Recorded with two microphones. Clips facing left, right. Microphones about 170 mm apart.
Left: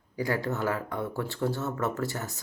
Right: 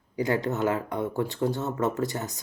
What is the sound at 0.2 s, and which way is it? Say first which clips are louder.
Speech: right 3 dB; 20° right (ahead or behind).